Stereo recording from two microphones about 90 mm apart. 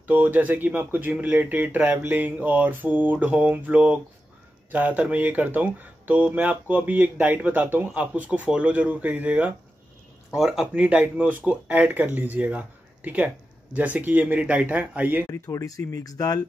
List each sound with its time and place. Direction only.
0.0 s speech: 20° right (ahead or behind)
10.3 s speech: 5° right (ahead or behind)
15.3 s speech: 35° left (ahead or behind)